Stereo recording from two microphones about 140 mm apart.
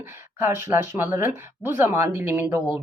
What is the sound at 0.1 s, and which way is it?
Speech, 15° right (ahead or behind).